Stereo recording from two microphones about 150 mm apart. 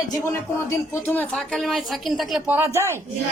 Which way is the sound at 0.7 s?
15° left (ahead or behind).